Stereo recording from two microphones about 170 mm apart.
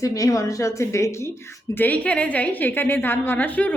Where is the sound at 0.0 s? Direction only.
20° left (ahead or behind).